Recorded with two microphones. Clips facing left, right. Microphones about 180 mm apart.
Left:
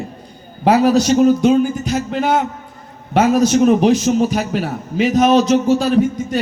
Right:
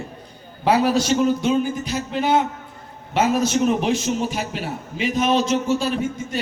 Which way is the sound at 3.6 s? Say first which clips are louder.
Left 7 dB; 40° left (ahead or behind).